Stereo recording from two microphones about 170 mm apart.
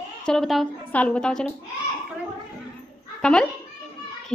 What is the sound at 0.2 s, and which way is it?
A woman's voice, 5° left (ahead or behind).